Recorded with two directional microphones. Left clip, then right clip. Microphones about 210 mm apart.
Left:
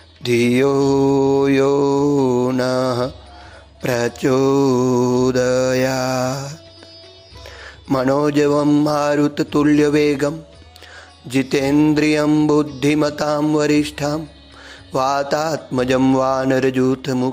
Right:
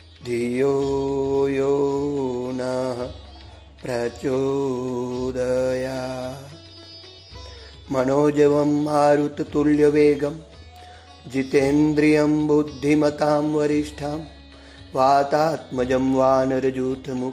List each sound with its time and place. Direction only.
0.2 s mantra: 20° left (ahead or behind)
7.9 s a man's voice: 20° left (ahead or behind)
11.2 s music: 20° left (ahead or behind)
14.9 s a man's voice: 20° left (ahead or behind)